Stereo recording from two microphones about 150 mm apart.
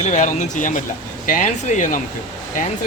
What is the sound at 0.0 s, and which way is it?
Speech, 55° left (ahead or behind).